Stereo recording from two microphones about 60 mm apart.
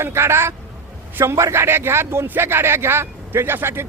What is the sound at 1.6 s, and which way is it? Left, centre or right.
Speech, right.